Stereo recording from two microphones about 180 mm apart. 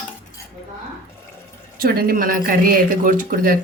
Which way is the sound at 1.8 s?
55° right (ahead or behind).